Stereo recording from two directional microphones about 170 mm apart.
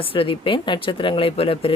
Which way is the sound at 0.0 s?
30° left (ahead or behind).